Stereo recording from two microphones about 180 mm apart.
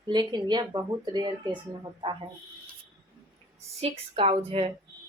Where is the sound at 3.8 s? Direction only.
30° right (ahead or behind).